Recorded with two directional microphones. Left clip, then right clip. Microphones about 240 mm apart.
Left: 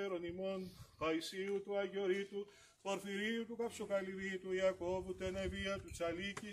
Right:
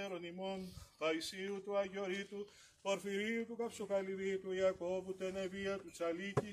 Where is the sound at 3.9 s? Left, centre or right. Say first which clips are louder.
Right 5 dB; centre.